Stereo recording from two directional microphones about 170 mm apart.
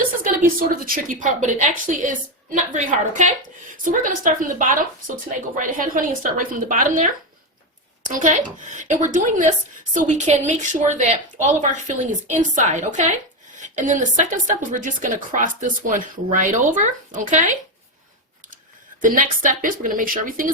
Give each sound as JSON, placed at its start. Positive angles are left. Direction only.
{"t": 0.4, "sound": "a woman's voice", "side_deg": -55}
{"t": 19.0, "sound": "a woman's voice", "side_deg": -50}